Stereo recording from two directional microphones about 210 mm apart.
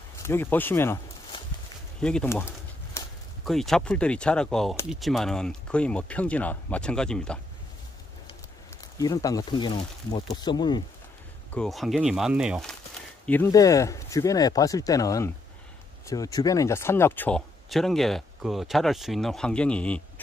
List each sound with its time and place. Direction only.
0.2 s speech: 10° left (ahead or behind)
2.0 s speech: 5° left (ahead or behind)
2.9 s a sound: 15° left (ahead or behind)
3.4 s speech: centre (ahead or behind)
8.9 s speech: 15° left (ahead or behind)
11.5 s speech: centre (ahead or behind)
13.2 s speech: 10° left (ahead or behind)